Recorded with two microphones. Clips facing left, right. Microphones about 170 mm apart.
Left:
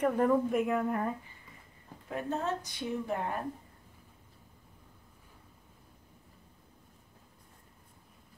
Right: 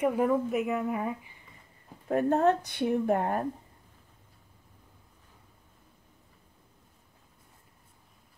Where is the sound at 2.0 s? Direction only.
55° right (ahead or behind).